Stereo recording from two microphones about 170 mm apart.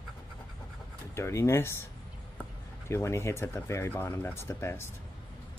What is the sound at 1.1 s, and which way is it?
Speech, 15° left (ahead or behind).